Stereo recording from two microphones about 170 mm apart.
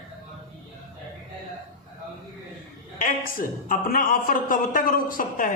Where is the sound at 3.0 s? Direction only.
55° left (ahead or behind).